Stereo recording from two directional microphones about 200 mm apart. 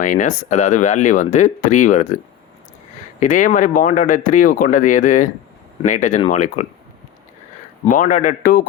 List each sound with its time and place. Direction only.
0.0 s speech: 40° left (ahead or behind)
3.2 s speech: 40° left (ahead or behind)
7.9 s speech: 40° left (ahead or behind)